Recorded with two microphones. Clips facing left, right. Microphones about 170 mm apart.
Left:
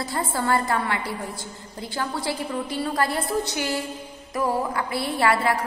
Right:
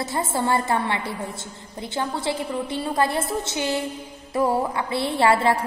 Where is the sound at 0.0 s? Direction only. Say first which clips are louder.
Right 2 dB; 25° right (ahead or behind).